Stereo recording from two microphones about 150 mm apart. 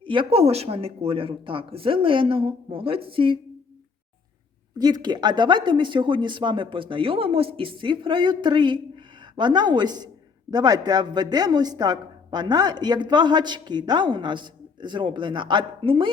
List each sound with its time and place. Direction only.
0.0 s speech: 35° right (ahead or behind)
4.8 s a woman's voice: 25° right (ahead or behind)